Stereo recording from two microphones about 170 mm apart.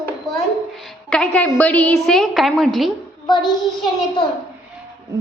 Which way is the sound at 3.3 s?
25° left (ahead or behind).